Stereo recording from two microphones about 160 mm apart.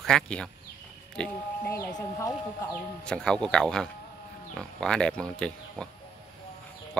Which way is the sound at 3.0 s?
5° left (ahead or behind).